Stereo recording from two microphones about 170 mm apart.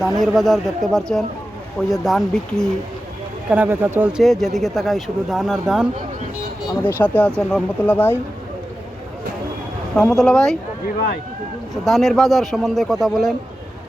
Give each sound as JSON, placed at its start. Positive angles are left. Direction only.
{"t": 0.3, "sound": "speech", "side_deg": 0}
{"t": 3.5, "sound": "speech", "side_deg": -10}
{"t": 4.2, "sound": "speech", "side_deg": 0}
{"t": 6.8, "sound": "speech", "side_deg": 10}
{"t": 9.9, "sound": "speech", "side_deg": 5}
{"t": 10.8, "sound": "speech", "side_deg": 65}
{"t": 11.7, "sound": "speech", "side_deg": 0}